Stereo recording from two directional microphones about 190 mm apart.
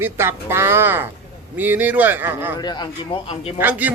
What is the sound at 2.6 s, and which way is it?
Speech, 20° left (ahead or behind).